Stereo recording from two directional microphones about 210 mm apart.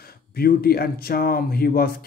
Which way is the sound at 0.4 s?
45° left (ahead or behind).